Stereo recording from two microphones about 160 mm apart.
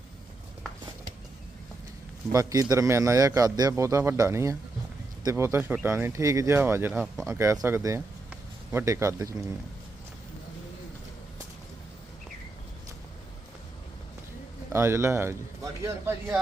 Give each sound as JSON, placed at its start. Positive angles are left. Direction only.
{"t": 2.3, "sound": "a man's voice", "side_deg": -20}
{"t": 8.3, "sound": "a sound", "side_deg": -15}
{"t": 14.7, "sound": "speech", "side_deg": -15}